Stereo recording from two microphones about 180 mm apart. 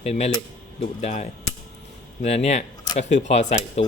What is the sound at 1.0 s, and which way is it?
Speech, 40° left (ahead or behind).